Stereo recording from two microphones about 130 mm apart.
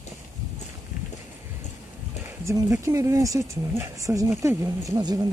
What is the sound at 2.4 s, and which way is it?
Speech, 25° right (ahead or behind).